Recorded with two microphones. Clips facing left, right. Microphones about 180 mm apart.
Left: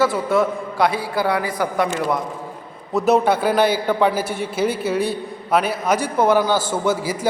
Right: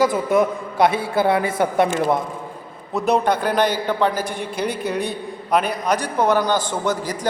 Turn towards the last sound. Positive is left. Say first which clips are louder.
# left 2 dB
turn(degrees=10)  # may be behind; listen again after turning